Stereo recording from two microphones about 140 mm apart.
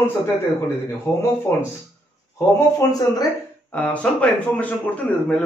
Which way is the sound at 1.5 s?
20° left (ahead or behind).